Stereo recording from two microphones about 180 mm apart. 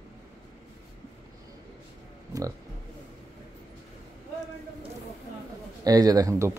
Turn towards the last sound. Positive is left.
turn(degrees=-15)  # may be behind; listen again after turning